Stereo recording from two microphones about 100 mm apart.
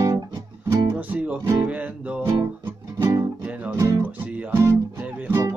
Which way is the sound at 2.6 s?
25° right (ahead or behind).